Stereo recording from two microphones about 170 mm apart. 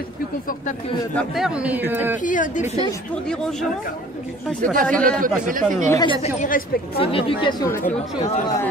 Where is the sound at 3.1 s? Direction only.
5° left (ahead or behind).